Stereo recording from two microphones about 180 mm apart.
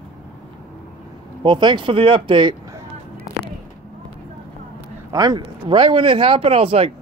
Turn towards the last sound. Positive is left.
turn(degrees=-30)  # may be behind; listen again after turning